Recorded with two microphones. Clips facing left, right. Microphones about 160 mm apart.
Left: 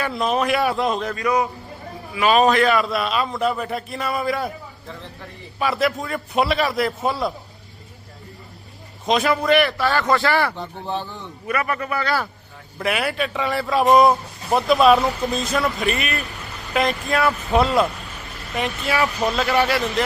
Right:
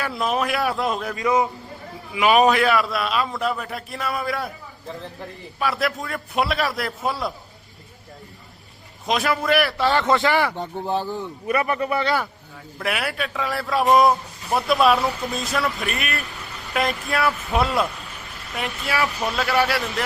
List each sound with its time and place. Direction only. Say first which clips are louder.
0.0 s a man's voice: left 2 dB; centre (ahead or behind)
1.1 s a man's voice: even; 20° right (ahead or behind)
2.6 s a man's voice: left 2 dB; 5° right (ahead or behind)
5.5 s a man's voice: left 3 dB; centre (ahead or behind)
9.0 s a man's voice: left 3 dB; centre (ahead or behind)
9.7 s speech: even; 25° right (ahead or behind)
10.6 s speech: right 3 dB; 40° right (ahead or behind)
11.0 s a man's voice: right 5 dB; 10° right (ahead or behind)
11.6 s speech: right 2 dB; 20° right (ahead or behind)
12.8 s a man's voice: left 3 dB; centre (ahead or behind)